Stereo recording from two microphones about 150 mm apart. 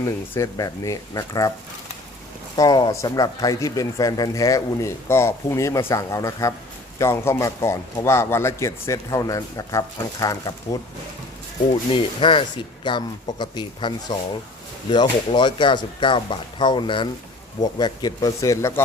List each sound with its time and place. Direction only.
0.0 s speech: 20° left (ahead or behind)
2.6 s speech: 25° left (ahead or behind)